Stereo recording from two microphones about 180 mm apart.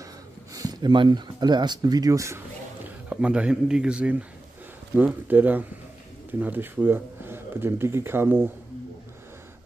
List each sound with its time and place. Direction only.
0.0 s speech: 20° right (ahead or behind)
3.1 s speech: 5° right (ahead or behind)